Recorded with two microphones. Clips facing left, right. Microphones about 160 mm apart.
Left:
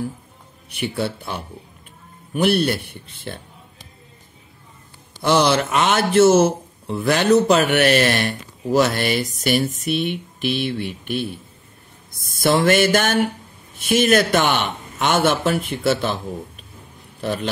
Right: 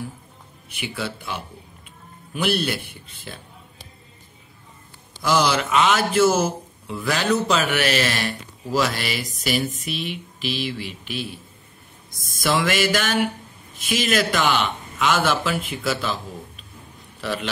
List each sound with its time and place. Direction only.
0.7 s a man's voice: 55° left (ahead or behind)
5.2 s a man's voice: 60° left (ahead or behind)
12.4 s a man's voice: 55° left (ahead or behind)